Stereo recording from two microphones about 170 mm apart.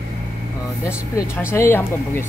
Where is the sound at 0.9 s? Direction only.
15° left (ahead or behind).